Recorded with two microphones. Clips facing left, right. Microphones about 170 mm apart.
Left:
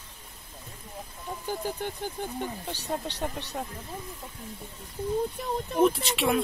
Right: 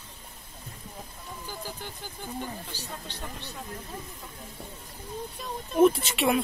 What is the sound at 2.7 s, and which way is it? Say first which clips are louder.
Speech: left 8 dB; 65° left (ahead or behind).